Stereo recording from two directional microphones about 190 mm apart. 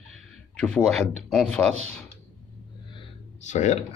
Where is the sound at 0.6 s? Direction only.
5° left (ahead or behind).